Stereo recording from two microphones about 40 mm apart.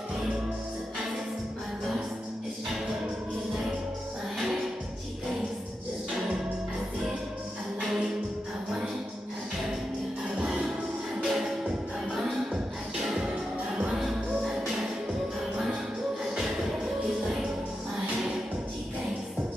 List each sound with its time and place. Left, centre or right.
7.8 s music: centre
11.2 s music: centre
13.8 s music: centre